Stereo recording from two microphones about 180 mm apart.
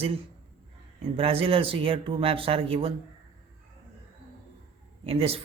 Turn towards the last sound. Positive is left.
turn(degrees=-30)  # may be behind; listen again after turning